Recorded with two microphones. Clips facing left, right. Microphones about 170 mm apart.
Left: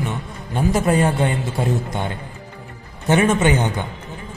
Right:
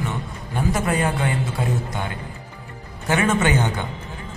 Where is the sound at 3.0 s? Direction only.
20° left (ahead or behind).